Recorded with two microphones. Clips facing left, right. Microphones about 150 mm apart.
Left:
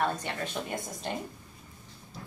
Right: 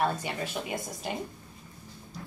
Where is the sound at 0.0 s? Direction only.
10° right (ahead or behind).